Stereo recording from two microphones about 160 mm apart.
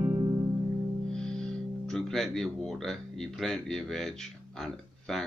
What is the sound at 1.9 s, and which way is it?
Music, centre (ahead or behind).